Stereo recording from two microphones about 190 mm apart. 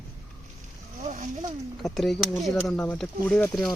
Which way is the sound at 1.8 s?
Centre (ahead or behind).